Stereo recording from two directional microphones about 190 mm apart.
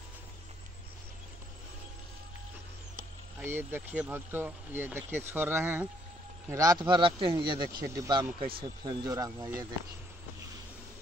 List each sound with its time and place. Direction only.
3.3 s speech: 10° right (ahead or behind)